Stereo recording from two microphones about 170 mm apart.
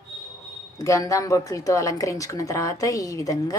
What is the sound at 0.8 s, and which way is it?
A woman's voice, 20° left (ahead or behind).